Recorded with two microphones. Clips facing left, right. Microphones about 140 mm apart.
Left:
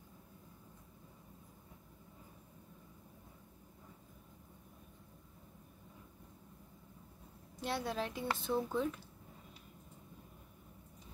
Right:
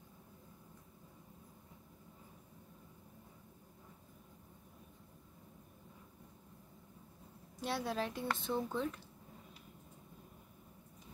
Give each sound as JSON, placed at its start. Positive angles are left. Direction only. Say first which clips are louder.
{"t": 7.6, "sound": "speech", "louder": "even", "side_deg": 0}